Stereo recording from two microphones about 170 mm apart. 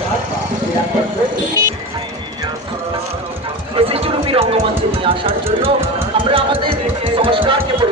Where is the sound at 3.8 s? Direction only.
35° right (ahead or behind).